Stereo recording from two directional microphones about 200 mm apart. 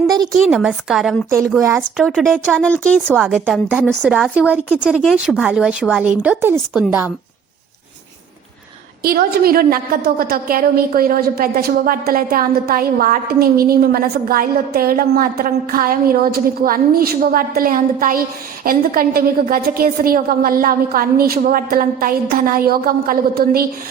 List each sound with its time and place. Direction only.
0.3 s a woman's voice: centre (ahead or behind)
1.3 s speech: 15° right (ahead or behind)
2.0 s a woman's voice: centre (ahead or behind)
9.0 s a woman's voice: 45° right (ahead or behind)